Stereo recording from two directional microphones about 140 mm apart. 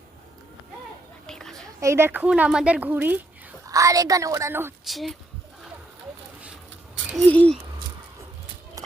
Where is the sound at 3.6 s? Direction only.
25° right (ahead or behind).